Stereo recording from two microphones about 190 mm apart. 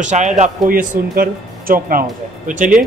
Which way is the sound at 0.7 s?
50° right (ahead or behind).